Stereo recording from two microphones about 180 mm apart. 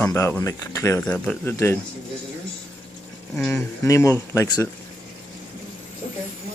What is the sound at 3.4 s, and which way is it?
Speech, 5° left (ahead or behind).